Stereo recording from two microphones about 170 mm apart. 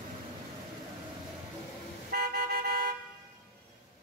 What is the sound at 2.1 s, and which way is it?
Toot, 60° right (ahead or behind).